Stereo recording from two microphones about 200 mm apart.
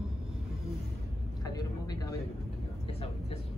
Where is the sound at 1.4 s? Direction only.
20° left (ahead or behind).